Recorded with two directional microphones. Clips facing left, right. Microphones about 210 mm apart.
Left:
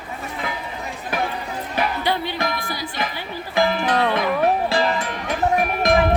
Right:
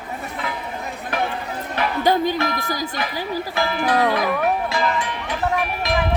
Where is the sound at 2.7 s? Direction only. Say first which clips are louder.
Right 2 dB; 40° right (ahead or behind).